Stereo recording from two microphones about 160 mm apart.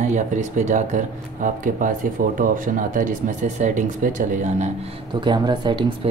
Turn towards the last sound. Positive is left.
turn(degrees=-30)  # may be behind; listen again after turning